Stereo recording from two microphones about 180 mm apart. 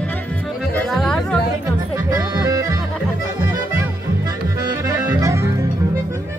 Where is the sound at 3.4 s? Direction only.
15° right (ahead or behind).